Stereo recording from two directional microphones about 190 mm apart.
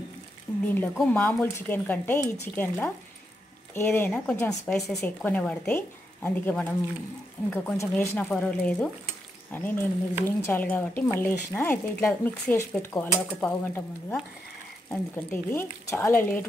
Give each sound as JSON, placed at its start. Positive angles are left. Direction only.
{"t": 0.9, "sound": "speech", "side_deg": 5}
{"t": 2.2, "sound": "speech", "side_deg": 35}
{"t": 2.5, "sound": "speech", "side_deg": 10}